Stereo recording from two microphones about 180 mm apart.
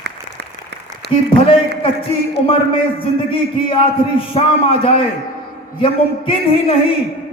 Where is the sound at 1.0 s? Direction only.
65° right (ahead or behind).